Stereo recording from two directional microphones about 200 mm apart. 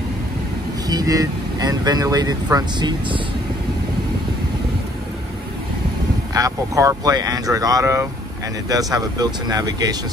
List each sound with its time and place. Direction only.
0.8 s speech: 20° right (ahead or behind)
6.3 s speech: 15° right (ahead or behind)